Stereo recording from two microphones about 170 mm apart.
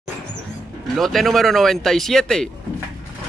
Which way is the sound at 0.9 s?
Centre (ahead or behind).